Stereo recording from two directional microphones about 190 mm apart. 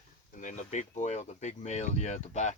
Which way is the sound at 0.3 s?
40° left (ahead or behind).